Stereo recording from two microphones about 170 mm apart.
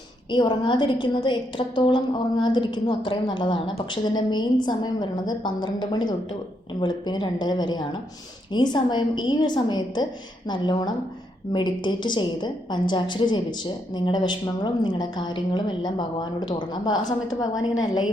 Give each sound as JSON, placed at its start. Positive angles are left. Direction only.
{"t": 0.3, "sound": "a woman's voice", "side_deg": 25}